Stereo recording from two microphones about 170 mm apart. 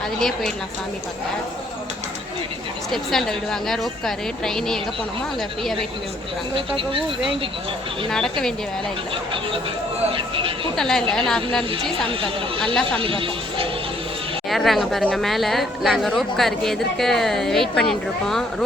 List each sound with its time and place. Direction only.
0.2 s speech: centre (ahead or behind)
2.9 s speech: centre (ahead or behind)
6.5 s speech: 30° right (ahead or behind)
8.1 s speech: 5° left (ahead or behind)
10.1 s speech: 30° right (ahead or behind)
10.8 s speech: 5° left (ahead or behind)
12.0 s speech: 30° right (ahead or behind)
14.5 s speech: centre (ahead or behind)